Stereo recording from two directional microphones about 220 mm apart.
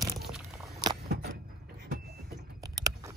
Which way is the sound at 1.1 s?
45° right (ahead or behind).